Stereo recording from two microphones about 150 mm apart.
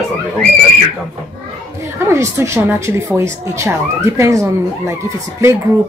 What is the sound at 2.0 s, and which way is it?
A woman's voice, 20° right (ahead or behind).